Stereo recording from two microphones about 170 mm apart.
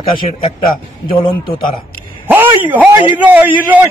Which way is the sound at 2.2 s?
10° right (ahead or behind).